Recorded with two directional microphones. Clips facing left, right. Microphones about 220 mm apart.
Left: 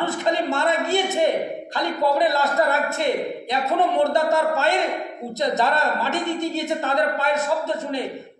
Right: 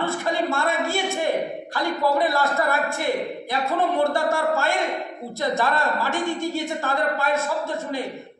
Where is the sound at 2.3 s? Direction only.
20° left (ahead or behind).